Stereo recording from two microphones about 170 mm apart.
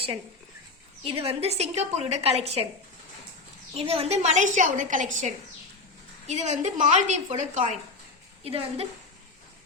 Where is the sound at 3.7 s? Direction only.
35° right (ahead or behind).